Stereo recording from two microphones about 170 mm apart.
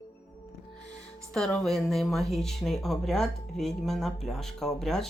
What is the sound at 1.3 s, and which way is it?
Speech, centre (ahead or behind).